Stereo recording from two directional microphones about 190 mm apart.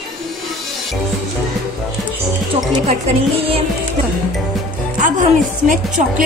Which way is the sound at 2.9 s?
30° right (ahead or behind).